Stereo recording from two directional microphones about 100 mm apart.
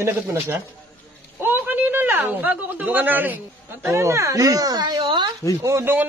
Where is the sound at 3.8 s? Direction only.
30° right (ahead or behind); by 5.3 s 50° right (ahead or behind).